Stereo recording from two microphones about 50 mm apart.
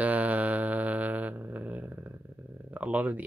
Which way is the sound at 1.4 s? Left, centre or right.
Right.